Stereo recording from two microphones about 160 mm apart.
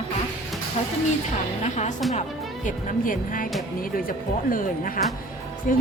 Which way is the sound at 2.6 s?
60° left (ahead or behind).